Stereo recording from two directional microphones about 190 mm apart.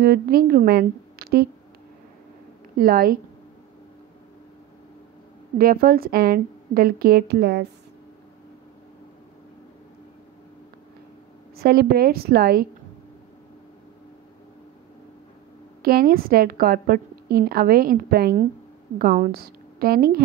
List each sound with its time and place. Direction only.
0.0 s a woman's voice: 50° right (ahead or behind)
2.8 s a woman's voice: 50° right (ahead or behind)
5.6 s a woman's voice: 50° right (ahead or behind)
11.5 s a woman's voice: 55° right (ahead or behind)
15.8 s a woman's voice: 50° right (ahead or behind)